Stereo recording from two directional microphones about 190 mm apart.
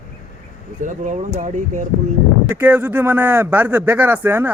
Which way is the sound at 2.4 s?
10° right (ahead or behind).